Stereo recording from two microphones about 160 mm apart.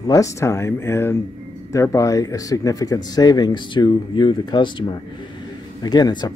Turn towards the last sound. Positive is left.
turn(degrees=25)  # may be behind; listen again after turning